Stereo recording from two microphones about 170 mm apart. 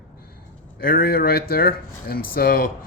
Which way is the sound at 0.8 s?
60° left (ahead or behind).